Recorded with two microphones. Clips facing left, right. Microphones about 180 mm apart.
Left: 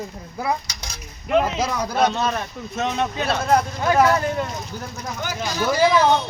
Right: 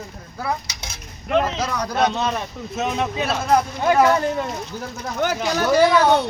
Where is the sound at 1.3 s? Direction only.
5° left (ahead or behind).